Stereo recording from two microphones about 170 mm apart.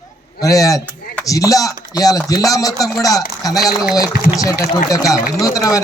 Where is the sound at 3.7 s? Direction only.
5° right (ahead or behind).